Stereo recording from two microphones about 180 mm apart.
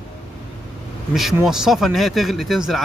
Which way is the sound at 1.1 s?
Centre (ahead or behind).